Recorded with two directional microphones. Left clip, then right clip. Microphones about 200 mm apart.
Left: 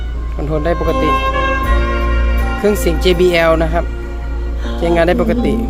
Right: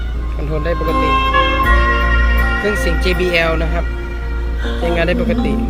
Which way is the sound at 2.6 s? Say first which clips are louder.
Left 3 dB; 30° left (ahead or behind).